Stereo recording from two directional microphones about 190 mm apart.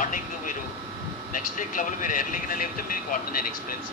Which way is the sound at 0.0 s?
45° left (ahead or behind).